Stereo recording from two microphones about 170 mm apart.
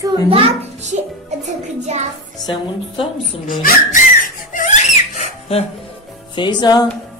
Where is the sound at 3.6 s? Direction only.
55° left (ahead or behind).